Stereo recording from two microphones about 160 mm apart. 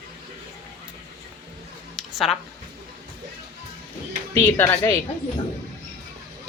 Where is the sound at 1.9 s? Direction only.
Centre (ahead or behind).